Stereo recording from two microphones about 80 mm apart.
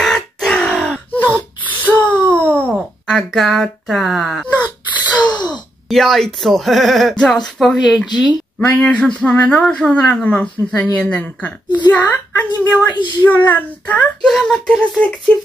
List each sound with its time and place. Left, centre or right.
0.0 s grunt: centre
1.1 s a sound: centre
2.7 s speech: centre
5.1 s gasp: centre
5.9 s speech: centre
8.6 s a woman's voice: centre
14.2 s speech: centre